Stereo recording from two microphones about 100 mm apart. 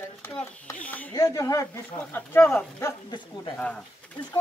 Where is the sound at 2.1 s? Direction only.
20° left (ahead or behind).